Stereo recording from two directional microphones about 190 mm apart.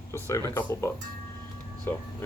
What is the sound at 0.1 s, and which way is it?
Speech, 15° left (ahead or behind).